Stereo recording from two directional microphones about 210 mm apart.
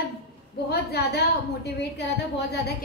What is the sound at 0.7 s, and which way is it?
Speech, 50° left (ahead or behind).